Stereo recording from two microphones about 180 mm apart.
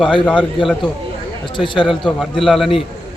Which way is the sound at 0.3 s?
5° left (ahead or behind).